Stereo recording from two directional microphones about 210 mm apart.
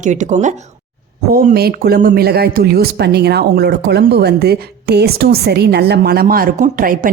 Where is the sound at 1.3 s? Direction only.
45° right (ahead or behind).